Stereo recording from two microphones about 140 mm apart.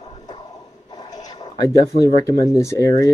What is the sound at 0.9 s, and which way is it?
Speech, 30° left (ahead or behind).